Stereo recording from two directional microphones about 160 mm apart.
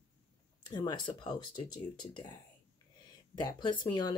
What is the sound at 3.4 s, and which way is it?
Speech, 25° left (ahead or behind).